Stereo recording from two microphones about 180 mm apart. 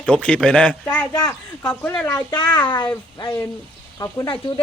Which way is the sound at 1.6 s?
10° left (ahead or behind).